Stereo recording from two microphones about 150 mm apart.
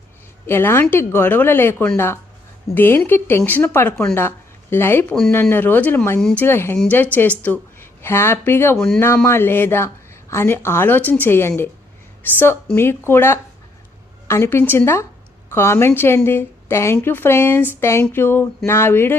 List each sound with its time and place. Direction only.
0.4 s a woman's voice: 15° left (ahead or behind)